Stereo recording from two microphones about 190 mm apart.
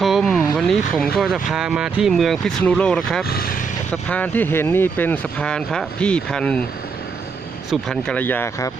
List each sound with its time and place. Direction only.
0.0 s a sound: centre (ahead or behind)
0.5 s vehicle: centre (ahead or behind)
1.1 s speech: centre (ahead or behind)
3.2 s speech: 55° left (ahead or behind)
4.1 s speech: 10° left (ahead or behind)
7.7 s speech: 5° left (ahead or behind)